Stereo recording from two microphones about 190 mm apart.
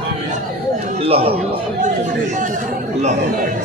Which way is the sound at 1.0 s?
30° right (ahead or behind).